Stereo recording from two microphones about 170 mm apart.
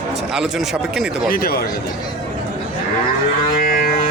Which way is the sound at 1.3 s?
65° left (ahead or behind).